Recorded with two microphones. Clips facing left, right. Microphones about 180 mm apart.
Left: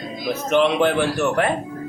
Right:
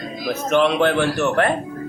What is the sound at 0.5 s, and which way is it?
Speech, 15° left (ahead or behind).